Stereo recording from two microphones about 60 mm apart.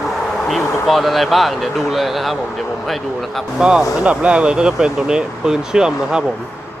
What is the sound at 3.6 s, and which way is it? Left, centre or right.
Speech, centre.